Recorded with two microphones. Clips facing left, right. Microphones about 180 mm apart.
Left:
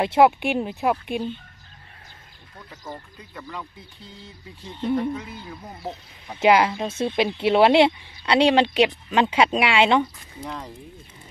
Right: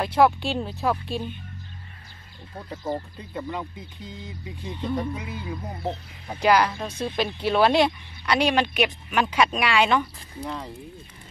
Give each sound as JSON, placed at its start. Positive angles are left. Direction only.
{"t": 0.0, "sound": "speech", "side_deg": 25}
{"t": 2.5, "sound": "speech", "side_deg": -35}
{"t": 5.8, "sound": "speech", "side_deg": -30}
{"t": 6.4, "sound": "speech", "side_deg": 25}
{"t": 10.4, "sound": "speech", "side_deg": 0}